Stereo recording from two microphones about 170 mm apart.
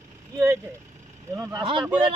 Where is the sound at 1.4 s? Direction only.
25° right (ahead or behind).